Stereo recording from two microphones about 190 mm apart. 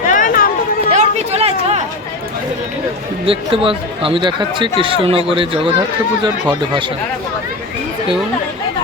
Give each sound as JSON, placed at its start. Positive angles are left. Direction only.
{"t": 0.1, "sound": "a sound", "side_deg": 45}
{"t": 0.9, "sound": "chatter", "side_deg": -35}
{"t": 3.2, "sound": "speech", "side_deg": -30}